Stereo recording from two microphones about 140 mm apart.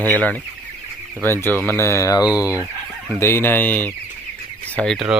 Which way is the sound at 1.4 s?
15° left (ahead or behind).